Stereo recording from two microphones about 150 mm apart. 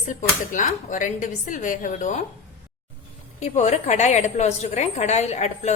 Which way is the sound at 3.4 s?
50° left (ahead or behind).